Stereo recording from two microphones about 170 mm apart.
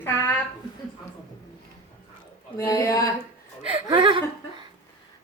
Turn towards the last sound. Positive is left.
turn(degrees=-25)  # may be behind; listen again after turning